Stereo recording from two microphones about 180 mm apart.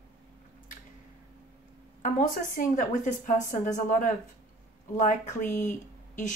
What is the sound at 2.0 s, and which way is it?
Speech, 45° left (ahead or behind).